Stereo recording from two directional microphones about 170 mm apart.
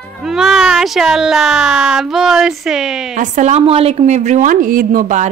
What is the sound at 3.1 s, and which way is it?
A woman's voice, 45° right (ahead or behind).